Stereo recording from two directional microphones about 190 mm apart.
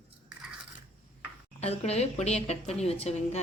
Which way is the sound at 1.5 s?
35° left (ahead or behind).